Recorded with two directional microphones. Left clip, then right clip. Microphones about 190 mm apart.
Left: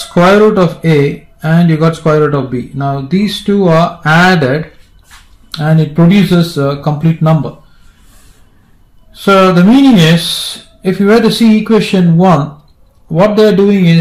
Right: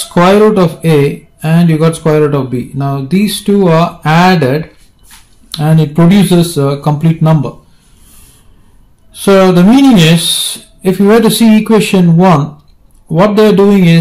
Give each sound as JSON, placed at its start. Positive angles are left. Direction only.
{"t": 0.0, "sound": "speech", "side_deg": -15}
{"t": 9.1, "sound": "speech", "side_deg": -25}